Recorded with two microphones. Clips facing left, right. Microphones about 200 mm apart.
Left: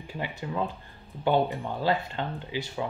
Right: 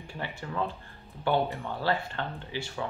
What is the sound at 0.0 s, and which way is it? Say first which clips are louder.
Speech: left 3 dB; 20° left (ahead or behind).